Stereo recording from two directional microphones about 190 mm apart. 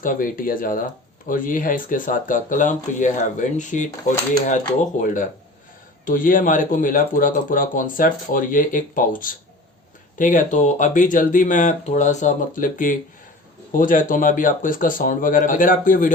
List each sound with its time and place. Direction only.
0.0 s speech: 45° left (ahead or behind)